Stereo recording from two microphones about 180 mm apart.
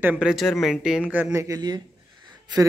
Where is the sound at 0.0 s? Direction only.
5° right (ahead or behind).